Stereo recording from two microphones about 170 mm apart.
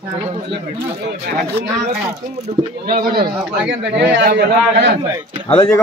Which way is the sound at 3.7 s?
90° right.